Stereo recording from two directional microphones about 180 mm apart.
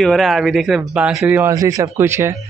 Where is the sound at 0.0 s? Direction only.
Centre (ahead or behind).